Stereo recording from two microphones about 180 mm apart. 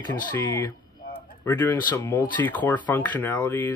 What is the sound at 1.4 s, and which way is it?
Speech, 10° left (ahead or behind).